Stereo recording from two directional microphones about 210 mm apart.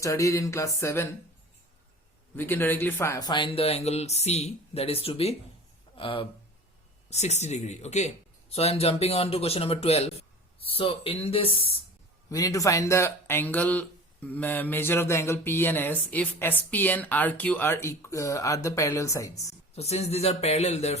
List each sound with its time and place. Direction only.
0.0 s speech: 15° left (ahead or behind)
2.3 s speech: 10° left (ahead or behind); by 11.7 s 25° left (ahead or behind)
12.3 s speech: 15° left (ahead or behind)
19.7 s speech: 30° left (ahead or behind)